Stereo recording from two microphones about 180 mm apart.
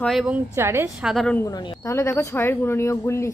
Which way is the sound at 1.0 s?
5° left (ahead or behind).